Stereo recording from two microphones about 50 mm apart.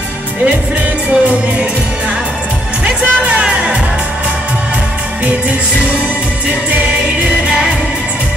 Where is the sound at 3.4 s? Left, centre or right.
Centre.